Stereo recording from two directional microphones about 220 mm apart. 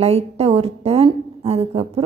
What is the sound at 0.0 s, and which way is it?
A woman's voice, 30° right (ahead or behind).